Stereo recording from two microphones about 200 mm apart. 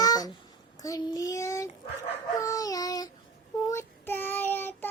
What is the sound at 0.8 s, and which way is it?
Child singing, 15° left (ahead or behind).